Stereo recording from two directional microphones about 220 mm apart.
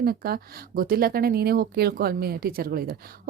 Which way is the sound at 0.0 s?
45° right (ahead or behind).